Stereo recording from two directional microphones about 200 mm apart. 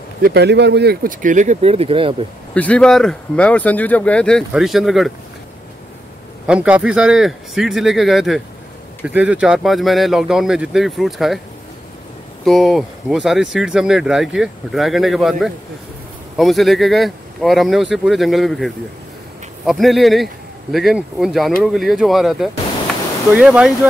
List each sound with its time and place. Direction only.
0.2 s speech: 55° right (ahead or behind); by 2.2 s 25° right (ahead or behind)
2.5 s speech: 5° left (ahead or behind)
6.4 s speech: 5° right (ahead or behind)
12.4 s speech: centre (ahead or behind)